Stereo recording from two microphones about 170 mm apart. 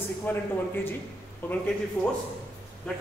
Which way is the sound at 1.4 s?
10° left (ahead or behind).